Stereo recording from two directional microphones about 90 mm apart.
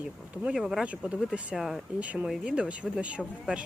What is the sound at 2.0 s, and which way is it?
Speech, 15° right (ahead or behind).